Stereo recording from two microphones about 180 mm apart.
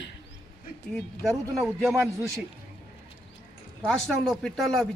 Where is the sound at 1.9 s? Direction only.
15° right (ahead or behind).